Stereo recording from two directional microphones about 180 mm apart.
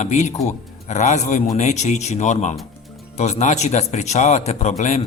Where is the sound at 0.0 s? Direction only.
40° left (ahead or behind).